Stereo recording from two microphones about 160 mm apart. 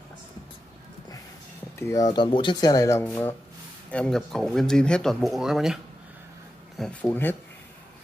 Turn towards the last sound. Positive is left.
turn(degrees=10)  # may be behind; listen again after turning